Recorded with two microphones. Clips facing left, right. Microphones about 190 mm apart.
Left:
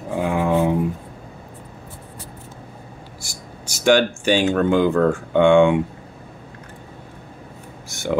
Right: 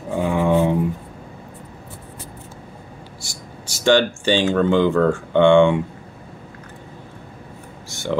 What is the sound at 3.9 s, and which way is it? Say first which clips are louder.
Speech: even; 10° left (ahead or behind).